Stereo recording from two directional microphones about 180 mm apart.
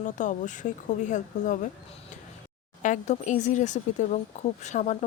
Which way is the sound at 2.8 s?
45° left (ahead or behind).